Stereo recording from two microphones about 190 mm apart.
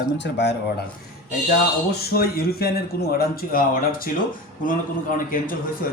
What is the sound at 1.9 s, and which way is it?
Speech, 55° left (ahead or behind).